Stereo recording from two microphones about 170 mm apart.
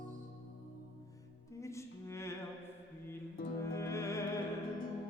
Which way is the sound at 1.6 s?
15° left (ahead or behind).